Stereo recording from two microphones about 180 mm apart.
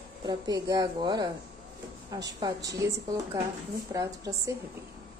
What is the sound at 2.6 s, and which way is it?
A woman's voice, 20° right (ahead or behind).